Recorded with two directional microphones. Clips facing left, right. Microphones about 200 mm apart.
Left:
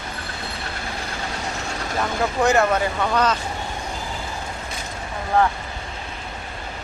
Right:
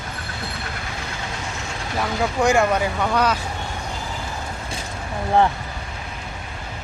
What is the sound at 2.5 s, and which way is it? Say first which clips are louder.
Speech: even; 10° right (ahead or behind).